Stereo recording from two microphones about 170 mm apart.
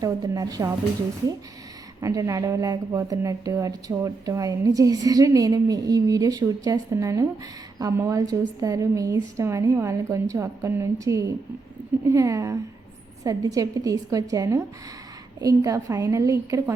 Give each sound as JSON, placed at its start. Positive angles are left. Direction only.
{"t": 0.0, "sound": "speech", "side_deg": -20}
{"t": 2.0, "sound": "a woman's voice", "side_deg": -20}